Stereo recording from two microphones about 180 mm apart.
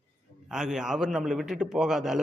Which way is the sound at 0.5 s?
5° right (ahead or behind).